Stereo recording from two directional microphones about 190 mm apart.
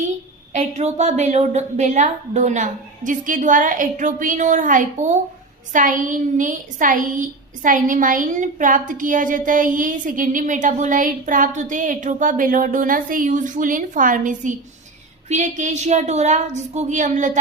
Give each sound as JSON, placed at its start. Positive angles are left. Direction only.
{"t": 0.5, "sound": "a woman's voice", "side_deg": -35}